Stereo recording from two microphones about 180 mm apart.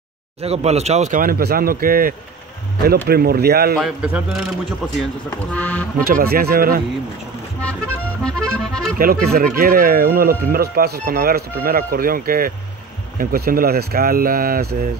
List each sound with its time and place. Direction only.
0.4 s speech: 35° right (ahead or behind); by 3.7 s 60° right (ahead or behind)
3.7 s a man's voice: 5° right (ahead or behind)
5.5 s speech: 10° left (ahead or behind)
5.9 s speech: 50° right (ahead or behind)
8.2 s accordion: 5° left (ahead or behind)
8.9 s speech: 55° right (ahead or behind)